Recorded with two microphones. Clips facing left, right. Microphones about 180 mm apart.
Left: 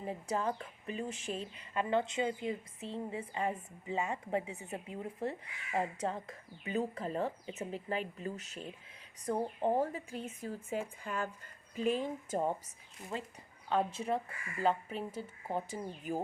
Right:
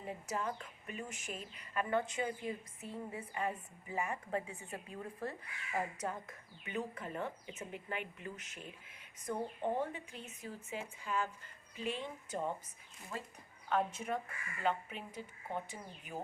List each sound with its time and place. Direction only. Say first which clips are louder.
0.0 s a woman's voice: left 5 dB; 30° left (ahead or behind); by 11.3 s 50° left (ahead or behind)
11.8 s speech: left 8 dB; 40° left (ahead or behind)
13.1 s a woman's voice: left 4 dB; 25° left (ahead or behind)